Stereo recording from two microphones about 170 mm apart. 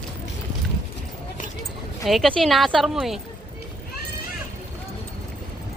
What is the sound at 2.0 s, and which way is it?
Speech, centre (ahead or behind).